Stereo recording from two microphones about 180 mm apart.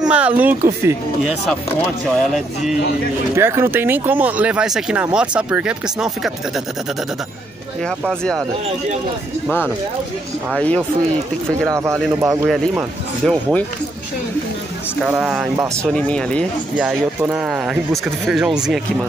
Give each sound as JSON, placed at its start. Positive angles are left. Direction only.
{"t": 0.1, "sound": "speech", "side_deg": -10}
{"t": 2.0, "sound": "speech", "side_deg": 0}
{"t": 3.3, "sound": "speech", "side_deg": -15}
{"t": 7.8, "sound": "speech", "side_deg": 5}
{"t": 10.5, "sound": "speech", "side_deg": 10}
{"t": 11.7, "sound": "speech", "side_deg": -15}
{"t": 12.4, "sound": "speech", "side_deg": 0}
{"t": 15.0, "sound": "speech", "side_deg": -5}
{"t": 15.6, "sound": "speech", "side_deg": -15}
{"t": 15.9, "sound": "speech", "side_deg": 5}
{"t": 16.7, "sound": "speech", "side_deg": -5}